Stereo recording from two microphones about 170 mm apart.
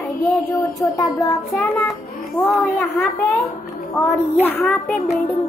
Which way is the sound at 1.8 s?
Centre (ahead or behind).